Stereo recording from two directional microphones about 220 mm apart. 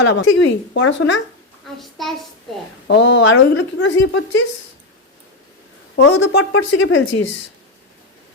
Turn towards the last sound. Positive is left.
turn(degrees=60)  # may be behind; listen again after turning